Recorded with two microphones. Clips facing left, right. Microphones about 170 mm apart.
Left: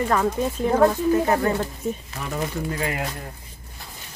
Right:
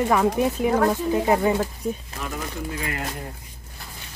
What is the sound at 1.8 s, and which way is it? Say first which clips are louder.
Speech: even; 5° left (ahead or behind).